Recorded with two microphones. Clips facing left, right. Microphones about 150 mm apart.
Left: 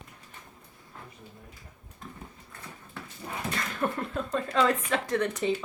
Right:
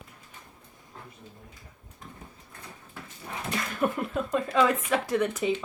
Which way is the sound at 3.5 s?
10° right (ahead or behind).